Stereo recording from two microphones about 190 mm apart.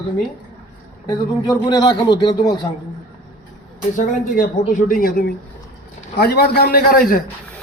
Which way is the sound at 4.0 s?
45° left (ahead or behind).